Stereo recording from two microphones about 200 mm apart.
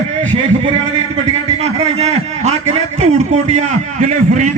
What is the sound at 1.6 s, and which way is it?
A man's voice, 30° right (ahead or behind).